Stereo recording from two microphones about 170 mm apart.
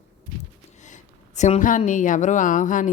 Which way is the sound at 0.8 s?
45° left (ahead or behind).